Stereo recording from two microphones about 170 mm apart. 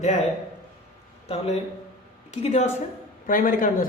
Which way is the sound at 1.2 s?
35° left (ahead or behind).